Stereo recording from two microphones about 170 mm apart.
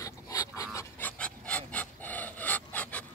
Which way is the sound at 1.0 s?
5° left (ahead or behind).